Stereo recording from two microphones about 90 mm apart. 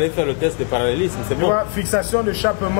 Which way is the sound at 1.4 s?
20° left (ahead or behind).